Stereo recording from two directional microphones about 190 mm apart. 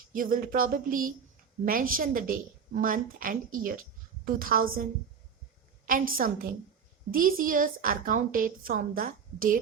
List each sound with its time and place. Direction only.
0.1 s a woman's voice: 45° right (ahead or behind)
5.8 s a woman's voice: 50° right (ahead or behind)